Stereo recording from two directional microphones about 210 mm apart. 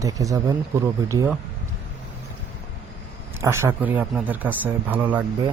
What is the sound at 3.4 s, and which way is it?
Speech, 10° right (ahead or behind).